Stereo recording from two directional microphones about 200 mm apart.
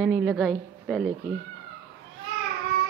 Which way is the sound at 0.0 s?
5° right (ahead or behind).